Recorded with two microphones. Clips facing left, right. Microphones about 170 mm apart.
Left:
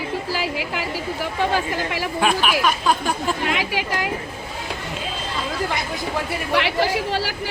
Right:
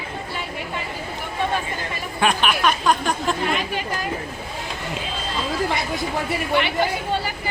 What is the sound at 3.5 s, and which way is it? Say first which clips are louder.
Speech: left 1 dB; 85° left.